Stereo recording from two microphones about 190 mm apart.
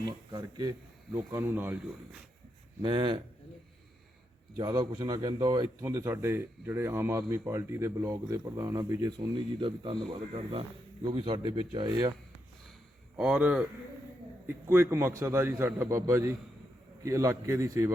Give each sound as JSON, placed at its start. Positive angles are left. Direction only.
{"t": 0.3, "sound": "a man's voice", "side_deg": -25}
{"t": 2.8, "sound": "a man's voice", "side_deg": -25}
{"t": 4.5, "sound": "a man's voice", "side_deg": -25}
{"t": 13.1, "sound": "a man's voice", "side_deg": -5}